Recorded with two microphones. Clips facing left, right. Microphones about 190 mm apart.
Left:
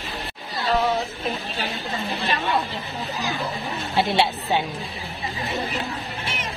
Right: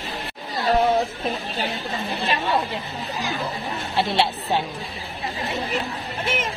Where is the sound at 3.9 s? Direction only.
Centre (ahead or behind).